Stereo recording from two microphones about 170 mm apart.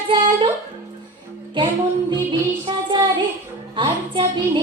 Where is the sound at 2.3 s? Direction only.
30° right (ahead or behind).